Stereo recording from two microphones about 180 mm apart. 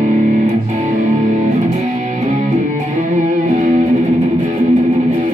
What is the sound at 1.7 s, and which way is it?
Music, 40° right (ahead or behind).